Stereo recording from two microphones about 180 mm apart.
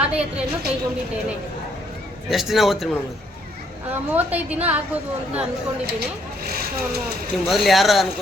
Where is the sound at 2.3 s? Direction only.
Centre (ahead or behind).